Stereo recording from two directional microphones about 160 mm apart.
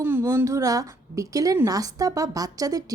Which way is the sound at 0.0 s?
15° right (ahead or behind).